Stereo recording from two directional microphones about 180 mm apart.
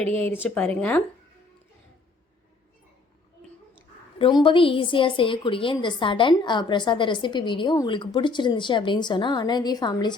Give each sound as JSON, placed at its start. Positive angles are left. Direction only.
{"t": 0.4, "sound": "speech", "side_deg": 10}
{"t": 4.2, "sound": "a woman's voice", "side_deg": 25}